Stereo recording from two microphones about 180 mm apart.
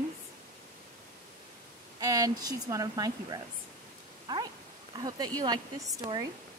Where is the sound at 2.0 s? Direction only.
20° right (ahead or behind).